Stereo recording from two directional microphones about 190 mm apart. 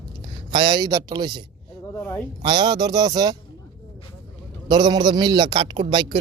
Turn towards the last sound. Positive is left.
turn(degrees=-25)  # may be behind; listen again after turning